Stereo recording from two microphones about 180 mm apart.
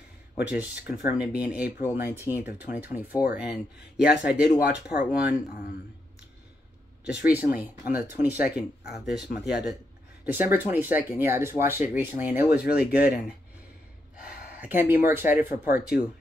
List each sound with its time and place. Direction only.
0.4 s speech: 10° right (ahead or behind)
4.1 s speech: 65° left (ahead or behind)
4.8 s speech: 5° right (ahead or behind)
7.1 s speech: 10° right (ahead or behind)
14.5 s speech: 10° right (ahead or behind)
15.6 s speech: 55° left (ahead or behind)